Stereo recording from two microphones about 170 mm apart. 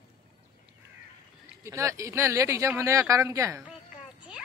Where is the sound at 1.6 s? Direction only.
15° right (ahead or behind).